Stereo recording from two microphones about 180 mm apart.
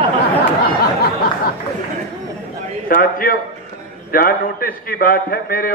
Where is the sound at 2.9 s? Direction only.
50° left (ahead or behind).